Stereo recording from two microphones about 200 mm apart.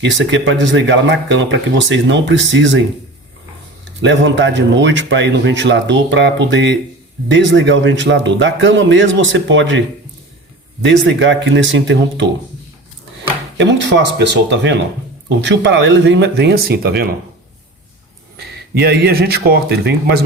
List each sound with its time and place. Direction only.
0.0 s speech: 65° right (ahead or behind)
4.0 s speech: 65° right (ahead or behind)
10.8 s a man's voice: 65° right (ahead or behind)
13.6 s speech: 65° right (ahead or behind)
18.3 s speech: 55° right (ahead or behind)